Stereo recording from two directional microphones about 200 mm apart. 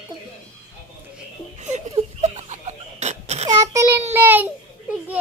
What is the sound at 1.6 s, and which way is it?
Laughter, 35° right (ahead or behind).